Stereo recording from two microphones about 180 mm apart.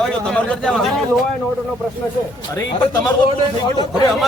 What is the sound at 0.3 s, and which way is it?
Speech, 5° left (ahead or behind).